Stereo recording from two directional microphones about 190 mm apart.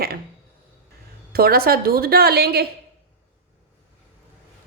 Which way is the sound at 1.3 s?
55° right (ahead or behind).